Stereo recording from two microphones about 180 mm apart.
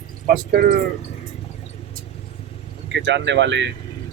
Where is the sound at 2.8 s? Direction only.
85° right.